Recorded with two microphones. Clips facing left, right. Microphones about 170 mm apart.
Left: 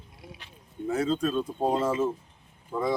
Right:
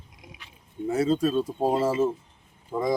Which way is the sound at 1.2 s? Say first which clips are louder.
Right 3 dB; 30° right (ahead or behind).